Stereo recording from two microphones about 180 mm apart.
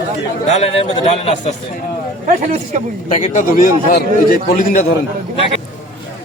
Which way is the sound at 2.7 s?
45° right (ahead or behind).